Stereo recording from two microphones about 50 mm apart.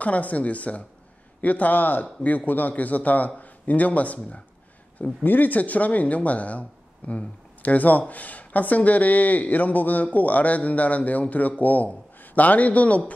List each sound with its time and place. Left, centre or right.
0.0 s speech: left